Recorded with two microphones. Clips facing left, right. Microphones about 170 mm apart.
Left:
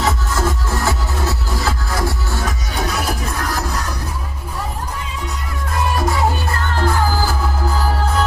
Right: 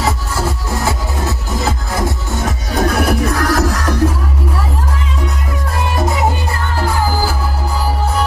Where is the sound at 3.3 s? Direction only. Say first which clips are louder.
Right 8 dB; 85° right.